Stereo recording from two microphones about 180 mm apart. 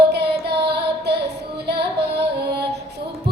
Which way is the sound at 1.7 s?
65° right (ahead or behind).